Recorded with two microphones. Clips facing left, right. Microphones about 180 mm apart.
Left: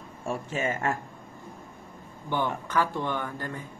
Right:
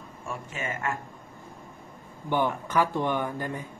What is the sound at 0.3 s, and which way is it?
Speech, 30° left (ahead or behind).